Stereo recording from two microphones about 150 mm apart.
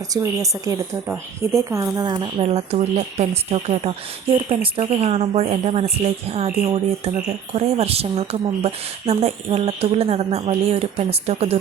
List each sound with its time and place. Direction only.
0.1 s a woman's voice: 20° right (ahead or behind); by 11.6 s 45° right (ahead or behind)